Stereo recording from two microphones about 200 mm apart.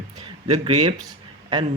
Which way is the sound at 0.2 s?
30° right (ahead or behind).